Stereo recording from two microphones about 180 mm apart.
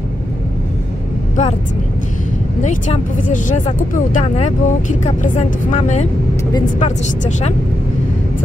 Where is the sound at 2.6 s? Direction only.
40° left (ahead or behind).